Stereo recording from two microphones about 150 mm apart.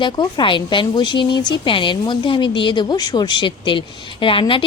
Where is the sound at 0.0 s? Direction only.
30° left (ahead or behind).